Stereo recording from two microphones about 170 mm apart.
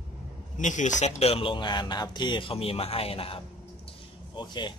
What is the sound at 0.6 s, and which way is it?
A man's voice, 45° left (ahead or behind).